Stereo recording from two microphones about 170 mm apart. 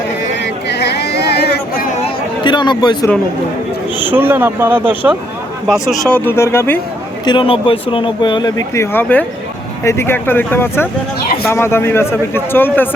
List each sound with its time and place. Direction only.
0.3 s a sound: 85° left; by 2.0 s 55° left (ahead or behind)
2.0 s chatter: 30° left (ahead or behind)
4.1 s speech: 10° right (ahead or behind)
5.9 s a man's voice: 5° left (ahead or behind)
7.3 s a man's voice: 30° left (ahead or behind); by 12.9 s 10° left (ahead or behind)